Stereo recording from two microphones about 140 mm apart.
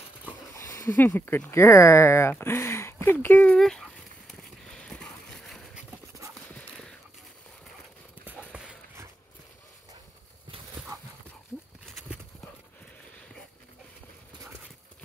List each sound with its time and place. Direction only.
0.6 s speech: 25° left (ahead or behind); by 3.9 s 5° left (ahead or behind)
4.4 s a sound: 5° left (ahead or behind)
8.5 s dog: 10° right (ahead or behind)